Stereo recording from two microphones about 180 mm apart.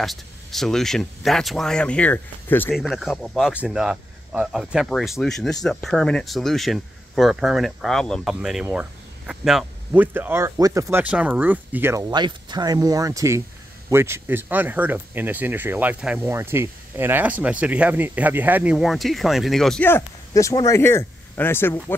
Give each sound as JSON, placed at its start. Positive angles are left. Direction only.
{"t": 0.0, "sound": "speech", "side_deg": 0}
{"t": 2.7, "sound": "speech", "side_deg": 0}
{"t": 12.1, "sound": "speech", "side_deg": -25}